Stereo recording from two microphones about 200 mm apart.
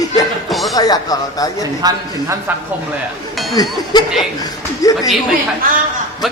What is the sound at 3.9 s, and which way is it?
Speech, 20° left (ahead or behind).